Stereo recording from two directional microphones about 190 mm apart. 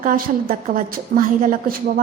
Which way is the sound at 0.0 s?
45° right (ahead or behind).